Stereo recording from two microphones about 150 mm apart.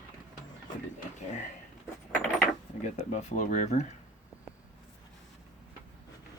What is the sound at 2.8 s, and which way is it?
Speech, 55° left (ahead or behind).